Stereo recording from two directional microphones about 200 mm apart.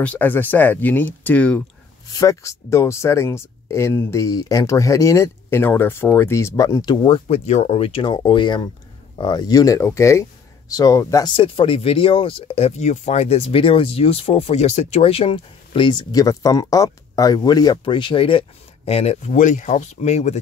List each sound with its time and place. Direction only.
0.0 s speech: 10° left (ahead or behind); by 20.3 s 35° left (ahead or behind)